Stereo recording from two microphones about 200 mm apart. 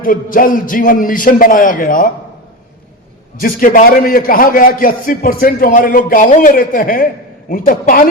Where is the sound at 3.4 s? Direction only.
45° left (ahead or behind).